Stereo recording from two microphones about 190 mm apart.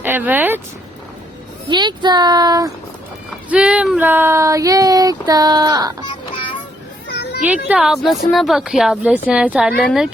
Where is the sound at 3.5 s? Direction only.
5° right (ahead or behind).